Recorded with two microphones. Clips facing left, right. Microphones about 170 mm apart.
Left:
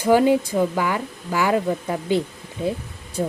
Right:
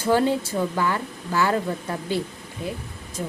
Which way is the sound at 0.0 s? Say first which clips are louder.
Left 4 dB; 15° left (ahead or behind).